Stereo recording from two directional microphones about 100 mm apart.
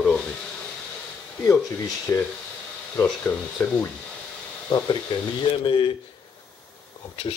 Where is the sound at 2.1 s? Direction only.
25° left (ahead or behind).